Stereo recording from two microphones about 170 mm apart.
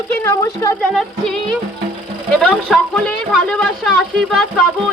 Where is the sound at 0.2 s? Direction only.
15° left (ahead or behind).